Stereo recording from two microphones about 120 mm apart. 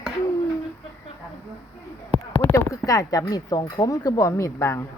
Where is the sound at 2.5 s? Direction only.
30° left (ahead or behind).